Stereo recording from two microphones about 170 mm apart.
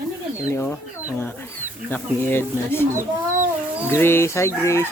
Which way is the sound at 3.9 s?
15° left (ahead or behind).